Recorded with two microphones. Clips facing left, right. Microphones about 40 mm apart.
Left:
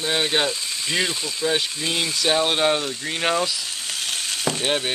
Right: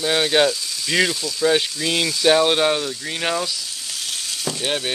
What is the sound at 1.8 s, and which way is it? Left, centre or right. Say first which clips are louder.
Speech: right 3 dB; left.